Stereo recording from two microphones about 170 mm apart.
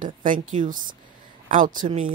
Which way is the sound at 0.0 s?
50° right (ahead or behind).